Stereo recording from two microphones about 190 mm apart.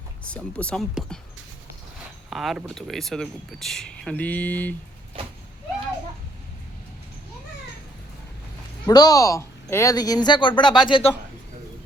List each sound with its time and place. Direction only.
0.3 s speech: 5° left (ahead or behind)
2.3 s speech: centre (ahead or behind)
5.2 s vehicle: 30° right (ahead or behind)
8.9 s speech: 20° left (ahead or behind)